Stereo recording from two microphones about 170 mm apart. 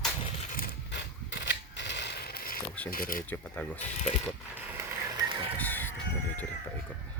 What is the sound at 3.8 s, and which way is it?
Speech, 45° left (ahead or behind).